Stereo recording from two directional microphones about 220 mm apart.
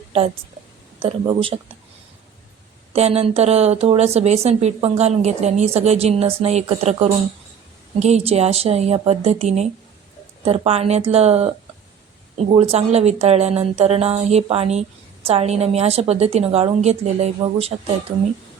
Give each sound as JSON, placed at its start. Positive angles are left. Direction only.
{"t": 0.9, "sound": "a woman's voice", "side_deg": -25}
{"t": 2.9, "sound": "a woman's voice", "side_deg": -30}